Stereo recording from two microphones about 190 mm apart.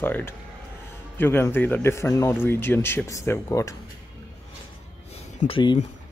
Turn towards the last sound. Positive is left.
turn(degrees=25)  # may be behind; listen again after turning